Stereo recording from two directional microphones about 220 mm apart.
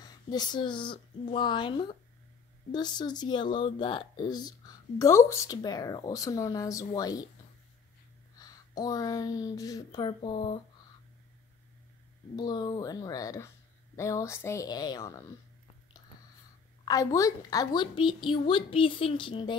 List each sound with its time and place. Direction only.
0.0 s a woman's voice: 20° left (ahead or behind)
8.4 s speech: 15° left (ahead or behind)
12.4 s speech: 20° left (ahead or behind)
16.8 s a woman's voice: 15° left (ahead or behind)